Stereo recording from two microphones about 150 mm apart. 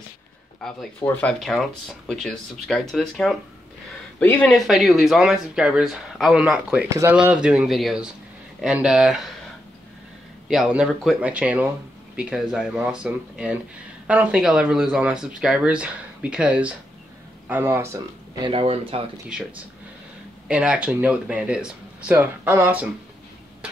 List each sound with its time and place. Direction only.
0.6 s speech: 5° left (ahead or behind)
10.5 s speech: 5° right (ahead or behind)
18.4 s speech: 35° right (ahead or behind)
20.4 s speech: 5° right (ahead or behind)